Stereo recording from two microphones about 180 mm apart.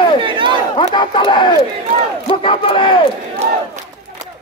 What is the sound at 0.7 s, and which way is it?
Speech, 25° left (ahead or behind).